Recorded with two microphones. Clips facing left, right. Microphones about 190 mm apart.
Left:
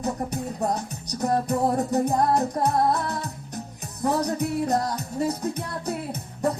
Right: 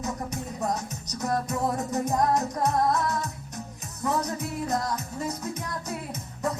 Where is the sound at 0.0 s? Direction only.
35° left (ahead or behind).